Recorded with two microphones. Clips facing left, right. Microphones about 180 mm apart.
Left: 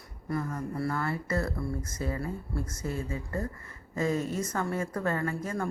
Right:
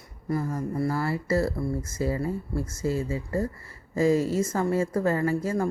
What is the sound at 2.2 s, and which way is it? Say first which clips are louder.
Speech: right 5 dB; 25° right (ahead or behind).